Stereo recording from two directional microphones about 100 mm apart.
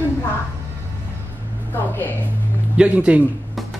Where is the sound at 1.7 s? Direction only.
20° left (ahead or behind).